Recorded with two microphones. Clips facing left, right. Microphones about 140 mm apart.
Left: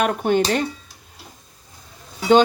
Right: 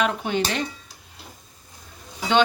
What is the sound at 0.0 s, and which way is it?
Speech, 50° left (ahead or behind).